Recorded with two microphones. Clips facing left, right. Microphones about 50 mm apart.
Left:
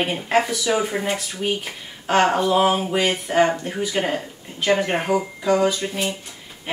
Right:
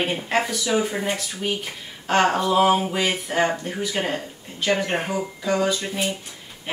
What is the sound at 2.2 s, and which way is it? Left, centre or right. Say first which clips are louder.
Speech: left 1 dB; centre.